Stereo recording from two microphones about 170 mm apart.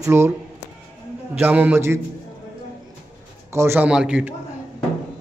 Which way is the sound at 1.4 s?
10° right (ahead or behind).